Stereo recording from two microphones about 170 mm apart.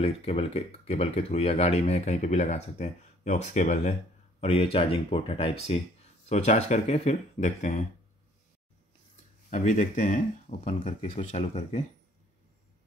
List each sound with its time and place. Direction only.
0.0 s speech: 35° left (ahead or behind)
9.5 s speech: 45° left (ahead or behind)